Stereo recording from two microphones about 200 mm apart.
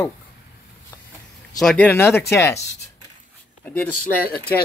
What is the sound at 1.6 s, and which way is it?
Speech, 5° left (ahead or behind).